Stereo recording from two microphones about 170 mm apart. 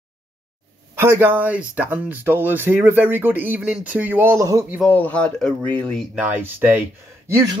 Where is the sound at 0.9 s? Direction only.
15° right (ahead or behind).